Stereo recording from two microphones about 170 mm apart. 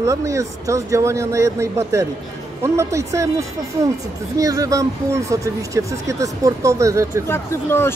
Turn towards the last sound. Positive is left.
turn(degrees=15)  # may be behind; listen again after turning